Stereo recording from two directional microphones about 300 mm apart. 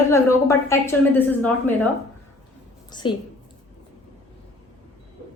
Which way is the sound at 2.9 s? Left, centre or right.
Centre.